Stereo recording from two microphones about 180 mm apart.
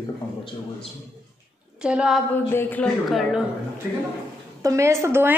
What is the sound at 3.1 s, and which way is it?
Speech, centre (ahead or behind).